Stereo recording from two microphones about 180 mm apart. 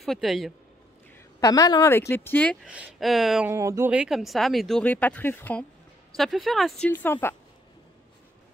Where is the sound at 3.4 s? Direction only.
15° right (ahead or behind).